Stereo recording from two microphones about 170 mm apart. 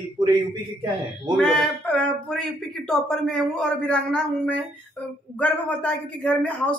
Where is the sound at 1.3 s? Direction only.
5° left (ahead or behind).